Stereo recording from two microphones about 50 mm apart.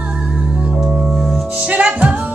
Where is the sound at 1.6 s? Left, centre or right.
Right.